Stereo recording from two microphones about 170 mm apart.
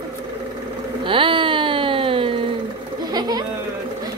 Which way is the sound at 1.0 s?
30° right (ahead or behind).